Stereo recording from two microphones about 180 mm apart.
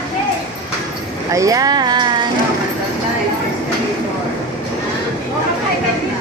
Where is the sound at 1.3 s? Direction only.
20° right (ahead or behind).